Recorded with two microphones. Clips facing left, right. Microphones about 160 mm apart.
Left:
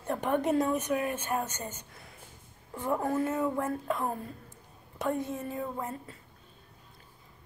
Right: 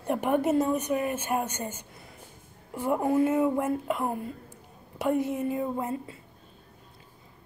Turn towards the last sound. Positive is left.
turn(degrees=-15)  # may be behind; listen again after turning